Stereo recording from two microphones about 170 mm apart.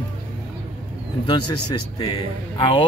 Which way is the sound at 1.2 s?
25° left (ahead or behind).